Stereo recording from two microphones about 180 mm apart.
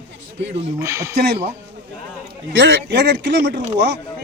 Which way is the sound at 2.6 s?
75° right (ahead or behind).